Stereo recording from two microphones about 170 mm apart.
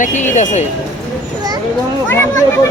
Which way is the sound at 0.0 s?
45° left (ahead or behind).